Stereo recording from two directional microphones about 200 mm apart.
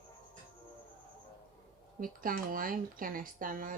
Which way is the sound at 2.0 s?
45° right (ahead or behind).